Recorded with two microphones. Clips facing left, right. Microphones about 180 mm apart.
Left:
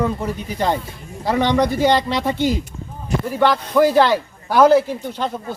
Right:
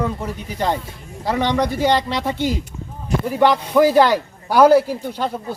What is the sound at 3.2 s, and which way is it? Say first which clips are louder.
A man's voice: right 2 dB; 15° right (ahead or behind).